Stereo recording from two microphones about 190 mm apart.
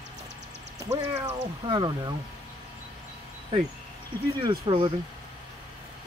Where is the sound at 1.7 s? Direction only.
20° right (ahead or behind).